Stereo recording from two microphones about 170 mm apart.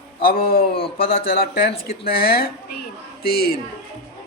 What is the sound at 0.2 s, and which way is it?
Speech, 60° left (ahead or behind).